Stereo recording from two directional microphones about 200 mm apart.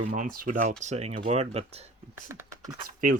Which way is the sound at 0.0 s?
40° right (ahead or behind).